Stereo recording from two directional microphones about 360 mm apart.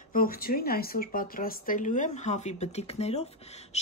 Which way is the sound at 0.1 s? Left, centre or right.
Left.